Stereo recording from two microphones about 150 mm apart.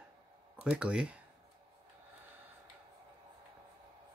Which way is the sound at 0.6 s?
5° right (ahead or behind).